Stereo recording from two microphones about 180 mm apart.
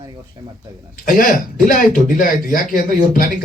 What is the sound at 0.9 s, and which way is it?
Speech, 50° left (ahead or behind).